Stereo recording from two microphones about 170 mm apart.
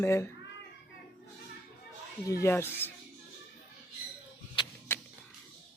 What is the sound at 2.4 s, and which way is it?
Speech, 15° left (ahead or behind).